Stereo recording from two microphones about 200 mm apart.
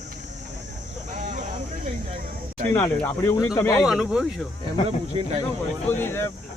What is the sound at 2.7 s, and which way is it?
Speech, 15° left (ahead or behind).